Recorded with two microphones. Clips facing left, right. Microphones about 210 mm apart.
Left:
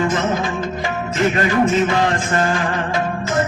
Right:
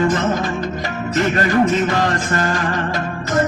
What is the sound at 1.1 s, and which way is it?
Music, 40° right (ahead or behind).